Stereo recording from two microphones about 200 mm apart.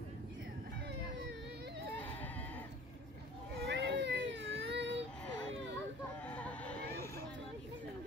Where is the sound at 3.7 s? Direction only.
60° right (ahead or behind).